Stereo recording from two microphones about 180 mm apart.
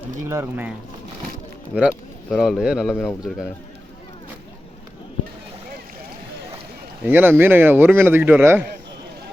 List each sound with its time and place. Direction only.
0.3 s a man's voice: 10° right (ahead or behind)
1.7 s a man's voice: 5° right (ahead or behind)
7.0 s a man's voice: 10° right (ahead or behind)